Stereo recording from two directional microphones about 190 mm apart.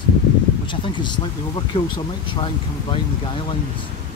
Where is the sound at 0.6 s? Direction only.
25° left (ahead or behind).